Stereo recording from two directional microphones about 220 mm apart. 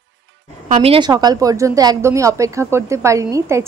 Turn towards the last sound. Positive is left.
turn(degrees=-15)  # may be behind; listen again after turning